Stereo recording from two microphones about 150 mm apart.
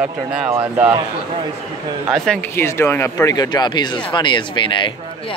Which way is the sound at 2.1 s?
5° left (ahead or behind).